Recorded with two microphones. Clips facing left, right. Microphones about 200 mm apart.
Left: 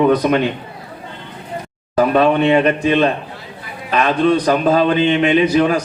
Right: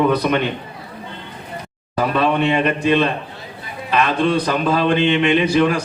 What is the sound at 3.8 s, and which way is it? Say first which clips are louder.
A man's voice: left 3 dB; 45° left (ahead or behind).